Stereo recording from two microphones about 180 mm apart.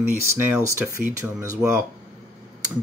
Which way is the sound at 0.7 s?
15° right (ahead or behind).